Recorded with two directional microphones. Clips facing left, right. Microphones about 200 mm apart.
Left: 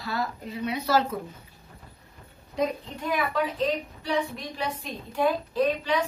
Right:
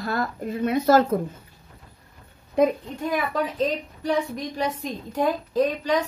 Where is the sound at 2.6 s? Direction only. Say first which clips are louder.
Right 7 dB; 55° right (ahead or behind).